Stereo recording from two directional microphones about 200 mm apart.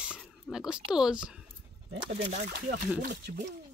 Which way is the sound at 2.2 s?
45° right (ahead or behind).